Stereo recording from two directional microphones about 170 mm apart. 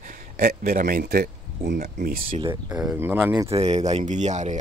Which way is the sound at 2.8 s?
10° right (ahead or behind).